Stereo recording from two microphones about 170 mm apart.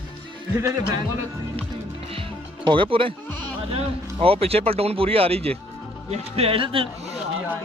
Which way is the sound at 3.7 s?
35° right (ahead or behind).